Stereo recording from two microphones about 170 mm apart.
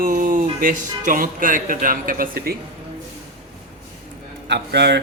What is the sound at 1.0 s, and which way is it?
Speech, 55° right (ahead or behind).